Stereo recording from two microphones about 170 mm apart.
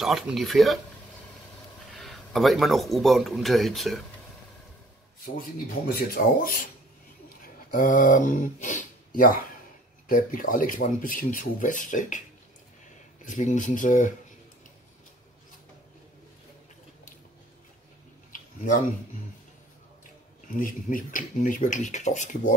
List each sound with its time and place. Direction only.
0.0 s speech: centre (ahead or behind)
1.9 s speech: centre (ahead or behind)
5.9 s speech: 60° left (ahead or behind)
7.7 s speech: 50° left (ahead or behind)
13.2 s speech: 45° left (ahead or behind)
20.5 s speech: 55° left (ahead or behind)